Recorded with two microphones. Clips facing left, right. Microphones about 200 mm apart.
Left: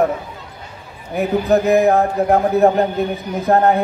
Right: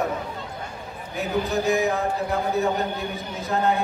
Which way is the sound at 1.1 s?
55° left (ahead or behind).